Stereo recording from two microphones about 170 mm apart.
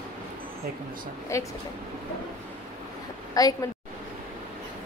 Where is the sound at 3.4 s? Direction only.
20° left (ahead or behind).